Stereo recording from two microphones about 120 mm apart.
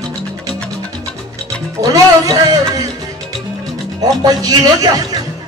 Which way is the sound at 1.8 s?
30° right (ahead or behind).